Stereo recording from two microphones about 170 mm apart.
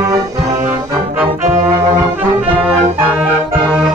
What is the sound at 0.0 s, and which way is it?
Brass instrument, 15° right (ahead or behind).